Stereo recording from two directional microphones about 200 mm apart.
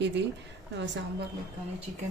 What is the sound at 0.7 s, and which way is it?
Speech, 60° right (ahead or behind).